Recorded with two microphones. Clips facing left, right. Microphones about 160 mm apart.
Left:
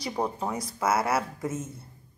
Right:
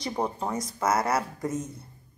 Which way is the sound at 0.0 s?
Centre (ahead or behind).